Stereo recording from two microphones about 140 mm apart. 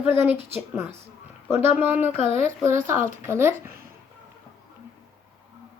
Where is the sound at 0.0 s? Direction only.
15° right (ahead or behind).